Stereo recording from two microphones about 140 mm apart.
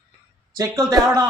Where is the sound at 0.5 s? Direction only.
25° right (ahead or behind).